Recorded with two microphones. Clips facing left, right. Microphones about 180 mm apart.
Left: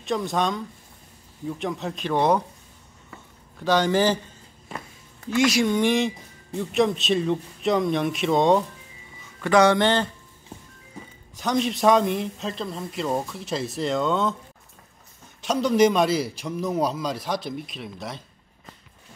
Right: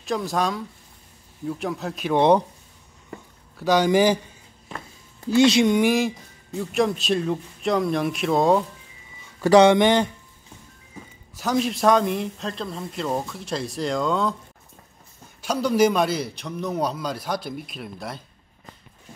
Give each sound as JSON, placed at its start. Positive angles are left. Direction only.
{"t": 0.0, "sound": "speech", "side_deg": 0}
{"t": 2.1, "sound": "speech", "side_deg": -25}
{"t": 3.5, "sound": "speech", "side_deg": -10}
{"t": 5.3, "sound": "speech", "side_deg": -30}
{"t": 5.7, "sound": "speech", "side_deg": -10}
{"t": 9.4, "sound": "speech", "side_deg": -35}
{"t": 9.7, "sound": "speech", "side_deg": -15}
{"t": 11.0, "sound": "speech", "side_deg": -5}
{"t": 15.4, "sound": "speech", "side_deg": -5}